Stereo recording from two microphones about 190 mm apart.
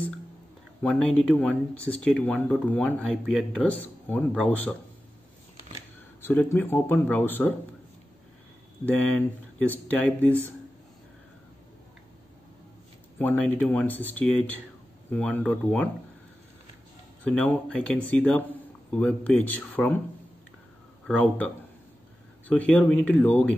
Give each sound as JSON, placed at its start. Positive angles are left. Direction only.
{"t": 0.8, "sound": "speech", "side_deg": 5}
{"t": 6.2, "sound": "speech", "side_deg": 10}
{"t": 8.8, "sound": "speech", "side_deg": 10}
{"t": 13.2, "sound": "speech", "side_deg": 10}
{"t": 17.2, "sound": "speech", "side_deg": 5}
{"t": 21.1, "sound": "speech", "side_deg": 10}
{"t": 22.5, "sound": "speech", "side_deg": 5}